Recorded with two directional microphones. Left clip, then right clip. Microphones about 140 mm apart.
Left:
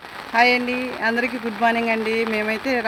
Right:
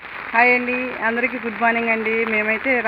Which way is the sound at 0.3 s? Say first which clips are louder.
Right 1 dB; 35° left (ahead or behind).